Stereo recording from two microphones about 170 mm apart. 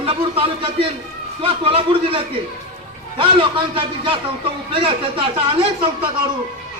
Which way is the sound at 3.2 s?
30° right (ahead or behind).